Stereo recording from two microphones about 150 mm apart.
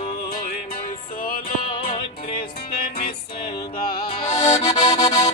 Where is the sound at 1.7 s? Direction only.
35° left (ahead or behind).